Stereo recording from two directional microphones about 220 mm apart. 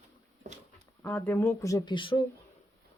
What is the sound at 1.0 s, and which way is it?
Speech, 10° left (ahead or behind).